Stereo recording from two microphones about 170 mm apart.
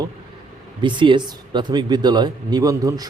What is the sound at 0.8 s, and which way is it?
Speech, 30° right (ahead or behind).